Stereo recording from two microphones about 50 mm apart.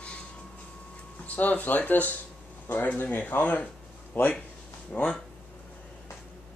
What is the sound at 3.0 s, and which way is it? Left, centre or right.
Speech, left.